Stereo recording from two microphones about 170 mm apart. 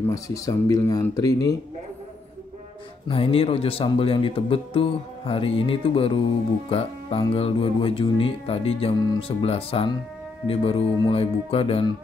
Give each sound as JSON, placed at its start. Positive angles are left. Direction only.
{"t": 0.1, "sound": "speech", "side_deg": 20}
{"t": 3.1, "sound": "speech", "side_deg": 35}